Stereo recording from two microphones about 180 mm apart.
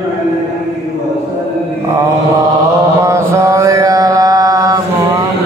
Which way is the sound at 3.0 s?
15° right (ahead or behind).